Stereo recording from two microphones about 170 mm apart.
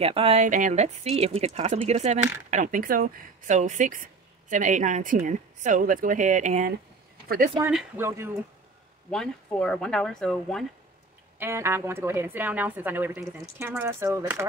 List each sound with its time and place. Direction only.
0.0 s speech: 35° right (ahead or behind)
2.5 s speech: 50° right (ahead or behind)
7.6 s a woman's voice: 10° right (ahead or behind)
9.1 s speech: 5° left (ahead or behind)
11.3 s a woman's voice: 15° right (ahead or behind)